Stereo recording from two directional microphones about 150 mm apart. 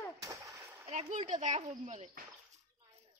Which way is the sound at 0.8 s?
50° right (ahead or behind).